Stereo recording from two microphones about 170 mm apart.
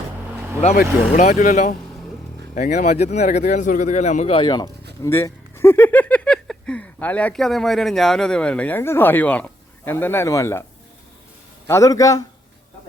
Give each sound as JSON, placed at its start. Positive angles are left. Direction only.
{"t": 1.1, "sound": "speech", "side_deg": 45}
{"t": 4.4, "sound": "a man's voice", "side_deg": 25}
{"t": 11.7, "sound": "a man's voice", "side_deg": 20}